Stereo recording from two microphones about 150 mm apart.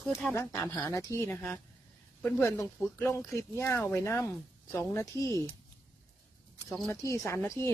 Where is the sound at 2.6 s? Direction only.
15° left (ahead or behind).